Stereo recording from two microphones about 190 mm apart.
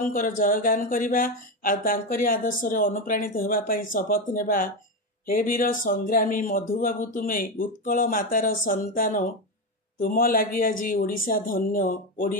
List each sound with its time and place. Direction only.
0.0 s speech: 45° left (ahead or behind)